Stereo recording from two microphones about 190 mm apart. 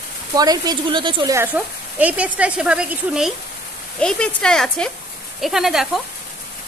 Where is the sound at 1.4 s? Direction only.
10° right (ahead or behind).